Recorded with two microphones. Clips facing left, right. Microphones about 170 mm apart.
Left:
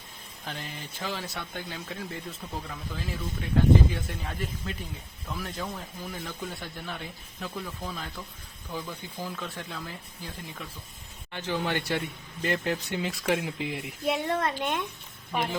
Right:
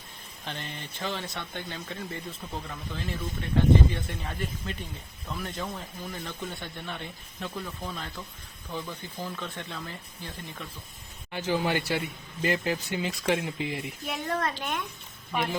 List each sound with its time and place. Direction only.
0.4 s speech: 5° left (ahead or behind)
11.3 s speech: 10° right (ahead or behind)
14.0 s a woman's voice: 25° left (ahead or behind)